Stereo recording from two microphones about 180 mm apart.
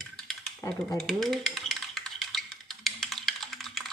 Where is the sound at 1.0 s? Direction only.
Centre (ahead or behind).